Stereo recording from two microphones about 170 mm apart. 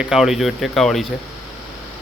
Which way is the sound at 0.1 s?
Centre (ahead or behind).